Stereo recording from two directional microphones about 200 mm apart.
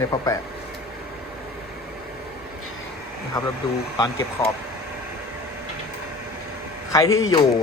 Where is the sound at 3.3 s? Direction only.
20° left (ahead or behind).